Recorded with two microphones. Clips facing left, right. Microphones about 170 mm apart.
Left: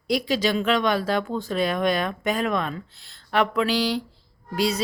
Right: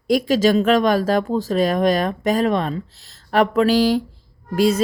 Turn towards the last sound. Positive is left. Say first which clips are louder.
# right 7 dB
turn(degrees=-50)  # may be behind; listen again after turning